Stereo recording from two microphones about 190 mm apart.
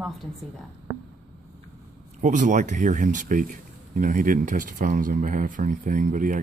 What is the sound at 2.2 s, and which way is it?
Speech, 40° right (ahead or behind).